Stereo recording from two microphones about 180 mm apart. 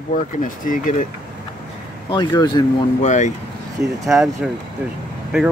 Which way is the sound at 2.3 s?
20° left (ahead or behind).